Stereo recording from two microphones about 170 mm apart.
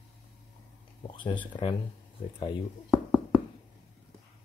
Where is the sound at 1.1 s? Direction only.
30° left (ahead or behind).